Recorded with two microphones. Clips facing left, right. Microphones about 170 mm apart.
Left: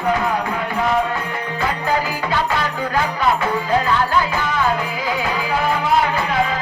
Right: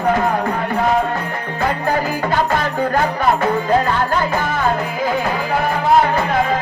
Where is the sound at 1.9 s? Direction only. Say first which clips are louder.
Right 2 dB; 50° right (ahead or behind).